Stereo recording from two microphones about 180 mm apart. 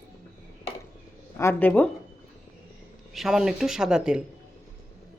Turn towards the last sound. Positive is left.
turn(degrees=-5)  # may be behind; listen again after turning